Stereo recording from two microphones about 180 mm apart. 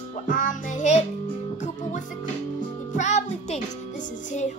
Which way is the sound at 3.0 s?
40° left (ahead or behind).